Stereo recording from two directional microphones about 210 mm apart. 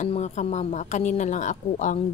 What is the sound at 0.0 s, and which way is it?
Speech, 35° left (ahead or behind).